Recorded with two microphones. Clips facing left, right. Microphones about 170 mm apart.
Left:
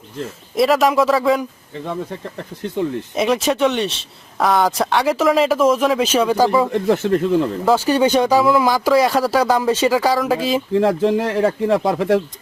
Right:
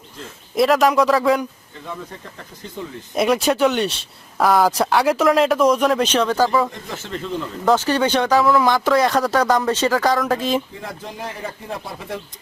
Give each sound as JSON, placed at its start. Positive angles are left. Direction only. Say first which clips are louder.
{"t": 0.5, "sound": "speech", "louder": "left 1 dB", "side_deg": 0}
{"t": 3.2, "sound": "speech", "louder": "even", "side_deg": 0}
{"t": 6.7, "sound": "speech", "louder": "left 15 dB", "side_deg": 60}
{"t": 7.6, "sound": "speech", "louder": "right 2 dB", "side_deg": 10}
{"t": 10.7, "sound": "speech", "louder": "left 18 dB", "side_deg": 75}